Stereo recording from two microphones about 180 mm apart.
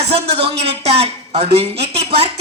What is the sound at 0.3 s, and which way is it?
A woman's voice, 30° right (ahead or behind).